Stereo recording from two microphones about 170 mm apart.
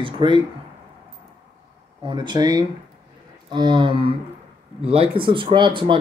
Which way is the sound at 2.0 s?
25° right (ahead or behind).